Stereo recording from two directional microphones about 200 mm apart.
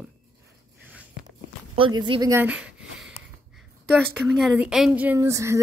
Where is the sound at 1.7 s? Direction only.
25° right (ahead or behind).